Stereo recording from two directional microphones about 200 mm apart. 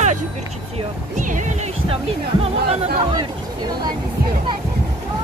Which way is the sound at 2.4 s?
30° right (ahead or behind).